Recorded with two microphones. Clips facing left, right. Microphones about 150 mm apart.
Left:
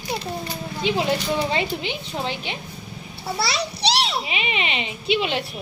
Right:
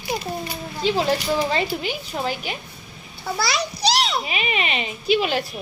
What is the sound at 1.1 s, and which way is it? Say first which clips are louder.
Speech: right 1 dB; 10° right (ahead or behind).